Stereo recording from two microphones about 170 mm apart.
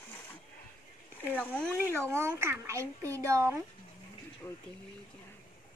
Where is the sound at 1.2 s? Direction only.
10° left (ahead or behind).